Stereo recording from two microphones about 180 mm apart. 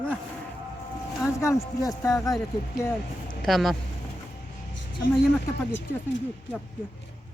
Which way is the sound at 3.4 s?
Centre (ahead or behind).